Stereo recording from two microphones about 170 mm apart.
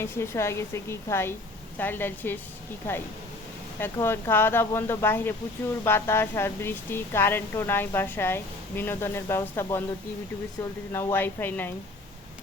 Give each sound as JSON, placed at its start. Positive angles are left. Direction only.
{"t": 0.0, "sound": "speech", "side_deg": 15}
{"t": 3.8, "sound": "speech", "side_deg": 15}
{"t": 10.9, "sound": "speech", "side_deg": 15}